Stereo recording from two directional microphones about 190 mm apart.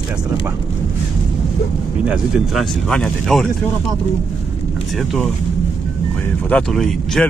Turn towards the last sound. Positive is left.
turn(degrees=0)  # may be behind; listen again after turning